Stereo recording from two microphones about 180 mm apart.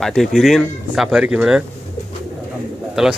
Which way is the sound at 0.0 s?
Centre (ahead or behind).